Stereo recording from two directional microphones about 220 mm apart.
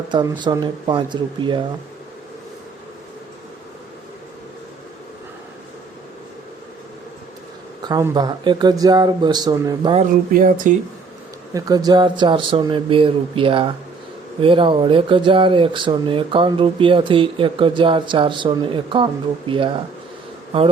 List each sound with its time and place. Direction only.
0.1 s speech: 20° right (ahead or behind)
7.8 s speech: 20° right (ahead or behind)
10.3 s speech: 35° right (ahead or behind)
11.5 s speech: 15° right (ahead or behind)